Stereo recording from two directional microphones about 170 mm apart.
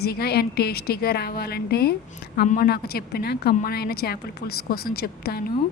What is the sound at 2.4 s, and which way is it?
Speech, 55° left (ahead or behind).